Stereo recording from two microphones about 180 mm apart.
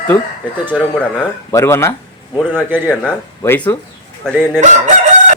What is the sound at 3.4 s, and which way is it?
A man's voice, 10° left (ahead or behind).